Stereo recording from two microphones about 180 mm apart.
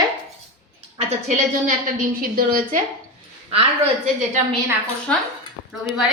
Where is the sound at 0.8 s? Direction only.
40° right (ahead or behind).